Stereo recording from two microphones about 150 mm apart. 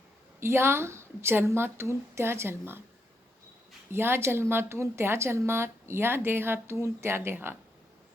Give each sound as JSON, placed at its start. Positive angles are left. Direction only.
{"t": 0.3, "sound": "a woman's voice", "side_deg": -15}
{"t": 3.9, "sound": "a woman's voice", "side_deg": -15}